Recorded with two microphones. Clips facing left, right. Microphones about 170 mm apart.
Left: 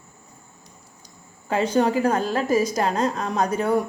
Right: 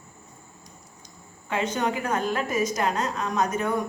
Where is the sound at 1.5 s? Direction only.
35° left (ahead or behind).